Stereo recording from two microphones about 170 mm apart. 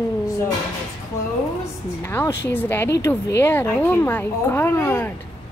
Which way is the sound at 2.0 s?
15° left (ahead or behind).